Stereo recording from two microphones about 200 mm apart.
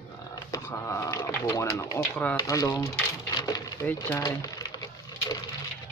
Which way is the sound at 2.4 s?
15° left (ahead or behind).